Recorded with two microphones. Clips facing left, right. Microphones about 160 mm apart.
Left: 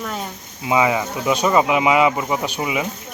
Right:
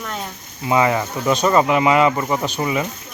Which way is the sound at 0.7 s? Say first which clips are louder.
Right 1 dB; 10° left (ahead or behind).